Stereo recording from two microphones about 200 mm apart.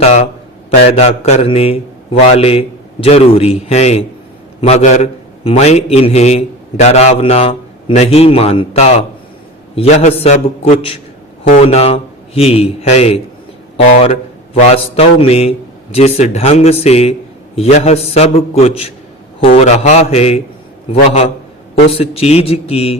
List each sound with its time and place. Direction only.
0.0 s a man's voice: 35° left (ahead or behind)
21.8 s a man's voice: 30° left (ahead or behind)